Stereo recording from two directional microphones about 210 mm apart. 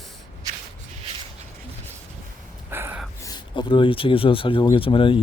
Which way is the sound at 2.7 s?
10° right (ahead or behind).